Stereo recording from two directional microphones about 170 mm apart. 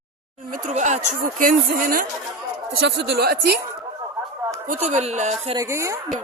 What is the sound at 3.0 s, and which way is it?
Speech, 70° right (ahead or behind).